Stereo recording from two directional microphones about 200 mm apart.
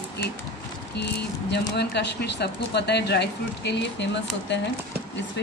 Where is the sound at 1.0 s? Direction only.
55° left (ahead or behind).